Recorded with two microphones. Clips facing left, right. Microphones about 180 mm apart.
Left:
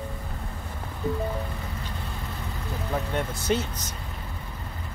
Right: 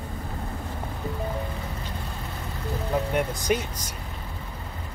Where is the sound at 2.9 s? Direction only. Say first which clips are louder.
Right 3 dB; 15° right (ahead or behind).